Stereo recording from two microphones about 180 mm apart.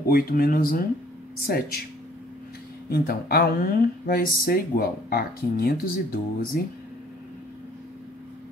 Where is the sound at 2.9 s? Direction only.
60° left (ahead or behind).